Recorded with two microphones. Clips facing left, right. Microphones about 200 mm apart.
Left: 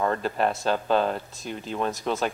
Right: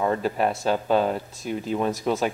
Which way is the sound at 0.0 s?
5° right (ahead or behind).